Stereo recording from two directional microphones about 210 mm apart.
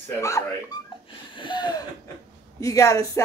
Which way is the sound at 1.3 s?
20° left (ahead or behind).